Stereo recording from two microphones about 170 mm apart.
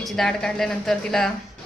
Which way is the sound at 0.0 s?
Centre (ahead or behind).